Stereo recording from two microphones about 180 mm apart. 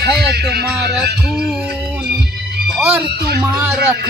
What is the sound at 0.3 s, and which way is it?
Speech, 60° right (ahead or behind).